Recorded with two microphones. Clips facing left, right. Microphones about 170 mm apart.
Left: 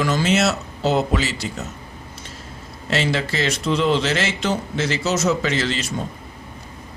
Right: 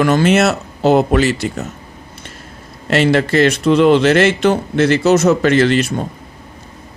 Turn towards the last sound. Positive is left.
turn(degrees=-60)  # may be behind; listen again after turning